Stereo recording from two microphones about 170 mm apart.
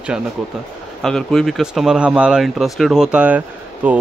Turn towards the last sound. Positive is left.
turn(degrees=-10)  # may be behind; listen again after turning